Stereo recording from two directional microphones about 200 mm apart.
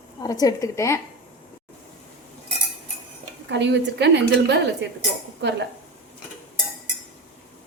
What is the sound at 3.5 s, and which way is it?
A woman's voice, 60° right (ahead or behind).